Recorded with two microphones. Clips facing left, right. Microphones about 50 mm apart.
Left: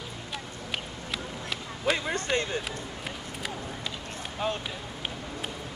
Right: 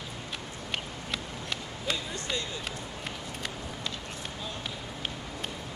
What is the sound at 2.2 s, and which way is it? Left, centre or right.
Speech, left.